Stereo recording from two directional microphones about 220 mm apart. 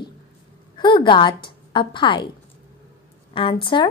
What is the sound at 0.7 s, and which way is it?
A woman's voice, 20° left (ahead or behind).